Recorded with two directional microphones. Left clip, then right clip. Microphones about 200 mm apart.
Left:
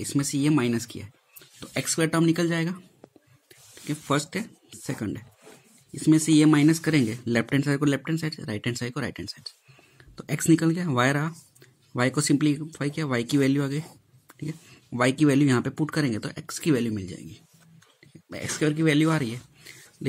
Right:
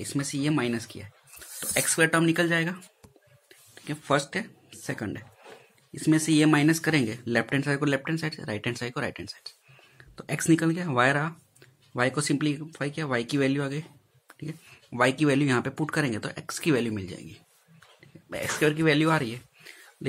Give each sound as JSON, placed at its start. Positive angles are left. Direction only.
{"t": 0.0, "sound": "speech", "side_deg": 35}